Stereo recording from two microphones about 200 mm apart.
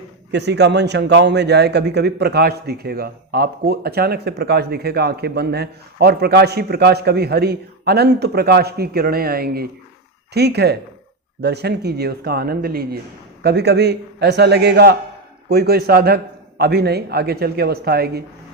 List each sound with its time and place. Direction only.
0.3 s a man's voice: 60° right (ahead or behind)